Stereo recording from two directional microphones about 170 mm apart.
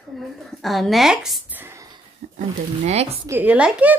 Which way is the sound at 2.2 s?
40° right (ahead or behind).